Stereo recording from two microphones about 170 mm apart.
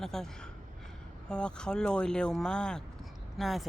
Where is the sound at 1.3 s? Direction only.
5° left (ahead or behind).